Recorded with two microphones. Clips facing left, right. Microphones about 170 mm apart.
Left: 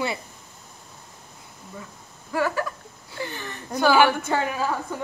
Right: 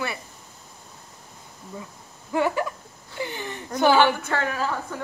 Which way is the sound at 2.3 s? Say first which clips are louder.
Right 1 dB; 20° right (ahead or behind).